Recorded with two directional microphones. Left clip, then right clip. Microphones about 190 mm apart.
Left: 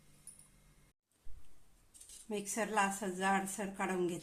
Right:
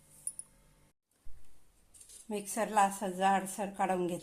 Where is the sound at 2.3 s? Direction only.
15° right (ahead or behind).